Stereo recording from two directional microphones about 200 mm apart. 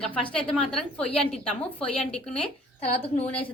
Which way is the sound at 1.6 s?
30° left (ahead or behind).